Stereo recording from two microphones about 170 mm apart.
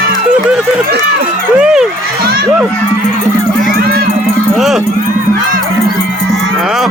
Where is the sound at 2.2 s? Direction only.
60° right (ahead or behind).